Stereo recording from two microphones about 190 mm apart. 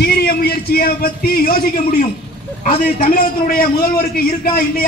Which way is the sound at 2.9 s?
50° left (ahead or behind).